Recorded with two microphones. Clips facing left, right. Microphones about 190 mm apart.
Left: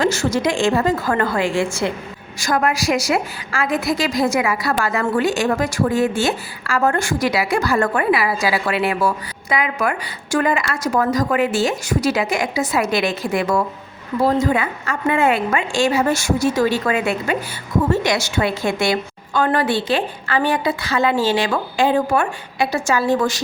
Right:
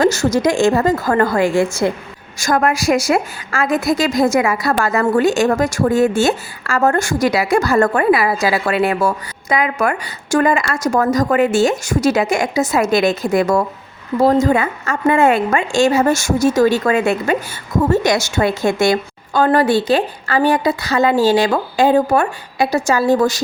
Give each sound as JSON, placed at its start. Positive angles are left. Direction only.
{"t": 0.0, "sound": "a woman's voice", "side_deg": -40}